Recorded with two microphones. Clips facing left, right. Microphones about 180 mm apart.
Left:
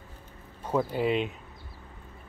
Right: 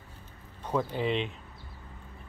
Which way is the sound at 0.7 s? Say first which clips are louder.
Left 3 dB; 5° left (ahead or behind).